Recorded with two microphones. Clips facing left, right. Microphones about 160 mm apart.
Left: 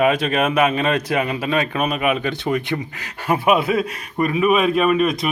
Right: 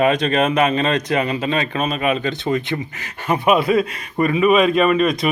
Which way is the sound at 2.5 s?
20° right (ahead or behind).